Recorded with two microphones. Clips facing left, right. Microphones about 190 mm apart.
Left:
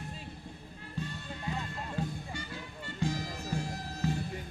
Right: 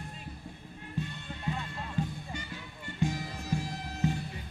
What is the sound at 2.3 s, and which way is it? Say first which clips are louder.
Music: even; 20° right (ahead or behind).